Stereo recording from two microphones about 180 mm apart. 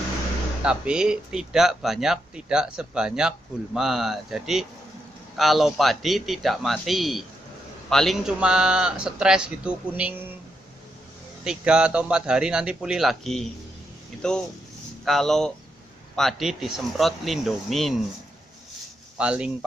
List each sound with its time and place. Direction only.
0.7 s speech: 5° right (ahead or behind)
11.4 s speech: 5° right (ahead or behind)
19.1 s speech: 5° right (ahead or behind)